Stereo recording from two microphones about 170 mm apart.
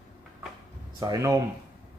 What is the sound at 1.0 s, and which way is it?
Speech, 20° right (ahead or behind).